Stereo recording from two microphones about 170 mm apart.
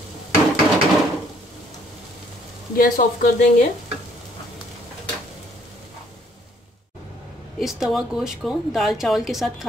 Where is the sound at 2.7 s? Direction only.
55° left (ahead or behind).